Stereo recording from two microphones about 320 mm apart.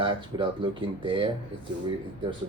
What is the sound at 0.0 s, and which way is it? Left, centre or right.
Speech, centre.